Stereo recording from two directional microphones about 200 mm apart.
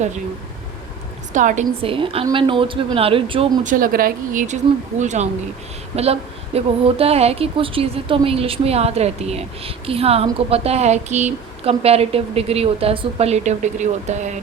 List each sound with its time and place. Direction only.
1.3 s a woman's voice: 40° right (ahead or behind)
3.6 s a woman's voice: 40° right (ahead or behind)